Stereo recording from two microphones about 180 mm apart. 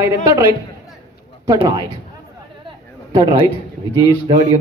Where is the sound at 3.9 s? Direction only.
20° right (ahead or behind).